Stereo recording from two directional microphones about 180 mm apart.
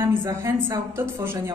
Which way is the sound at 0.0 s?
10° right (ahead or behind).